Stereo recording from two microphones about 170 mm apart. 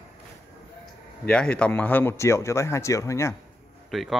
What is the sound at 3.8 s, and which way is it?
Speech, centre (ahead or behind).